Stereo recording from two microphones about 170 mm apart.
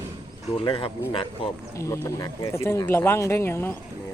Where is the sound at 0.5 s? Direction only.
30° left (ahead or behind).